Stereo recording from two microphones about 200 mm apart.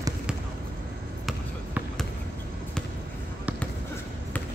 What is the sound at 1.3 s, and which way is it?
Basketball bounce, centre (ahead or behind).